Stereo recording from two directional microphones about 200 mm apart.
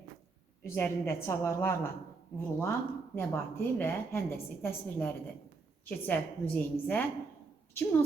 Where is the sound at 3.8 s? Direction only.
10° left (ahead or behind).